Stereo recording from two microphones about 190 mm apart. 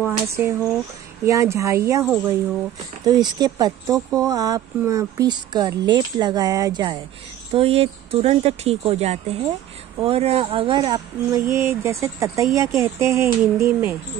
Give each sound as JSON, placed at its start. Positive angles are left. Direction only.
{"t": 0.0, "sound": "speech", "side_deg": -10}
{"t": 3.1, "sound": "speech", "side_deg": -20}